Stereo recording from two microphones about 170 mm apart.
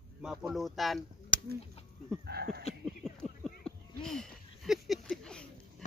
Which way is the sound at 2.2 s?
65° right (ahead or behind).